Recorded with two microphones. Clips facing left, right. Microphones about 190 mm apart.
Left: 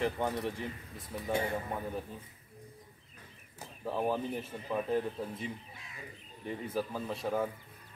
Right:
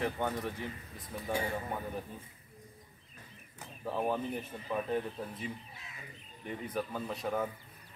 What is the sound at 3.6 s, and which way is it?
Speech, centre (ahead or behind).